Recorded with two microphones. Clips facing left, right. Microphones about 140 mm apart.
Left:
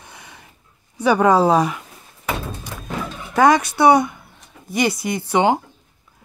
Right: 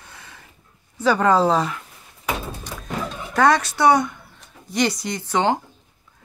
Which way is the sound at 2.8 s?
10° left (ahead or behind).